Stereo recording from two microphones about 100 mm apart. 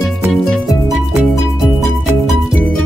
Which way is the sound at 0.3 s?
Centre (ahead or behind).